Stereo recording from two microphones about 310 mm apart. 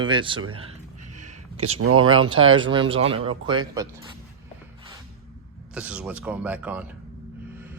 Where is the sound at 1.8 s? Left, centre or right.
Right.